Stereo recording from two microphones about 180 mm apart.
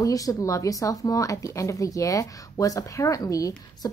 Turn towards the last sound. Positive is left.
turn(degrees=20)  # may be behind; listen again after turning